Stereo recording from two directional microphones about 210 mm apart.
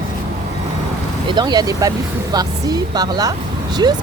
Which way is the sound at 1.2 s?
20° right (ahead or behind).